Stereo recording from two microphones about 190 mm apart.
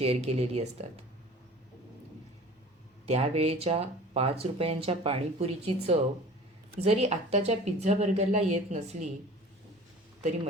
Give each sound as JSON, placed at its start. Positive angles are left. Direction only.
{"t": 0.0, "sound": "speech", "side_deg": -30}
{"t": 3.1, "sound": "speech", "side_deg": -35}